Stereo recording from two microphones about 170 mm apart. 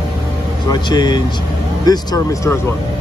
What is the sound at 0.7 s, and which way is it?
Speech, 25° left (ahead or behind).